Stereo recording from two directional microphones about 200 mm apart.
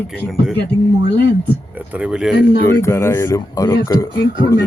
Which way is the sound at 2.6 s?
10° left (ahead or behind).